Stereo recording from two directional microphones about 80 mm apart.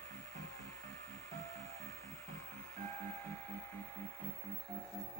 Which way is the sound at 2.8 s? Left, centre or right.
Left.